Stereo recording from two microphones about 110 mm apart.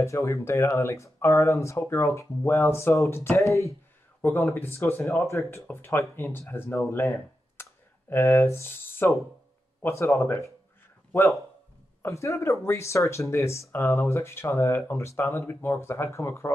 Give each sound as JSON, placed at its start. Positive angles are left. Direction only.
{"t": 0.0, "sound": "speech", "side_deg": 25}
{"t": 6.9, "sound": "a sound", "side_deg": 20}
{"t": 8.1, "sound": "speech", "side_deg": 25}
{"t": 12.0, "sound": "speech", "side_deg": 25}